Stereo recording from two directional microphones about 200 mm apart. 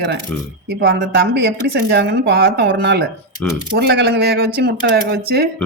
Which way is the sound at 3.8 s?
55° right (ahead or behind).